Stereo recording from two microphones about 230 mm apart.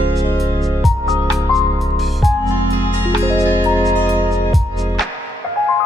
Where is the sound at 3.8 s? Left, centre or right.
Centre.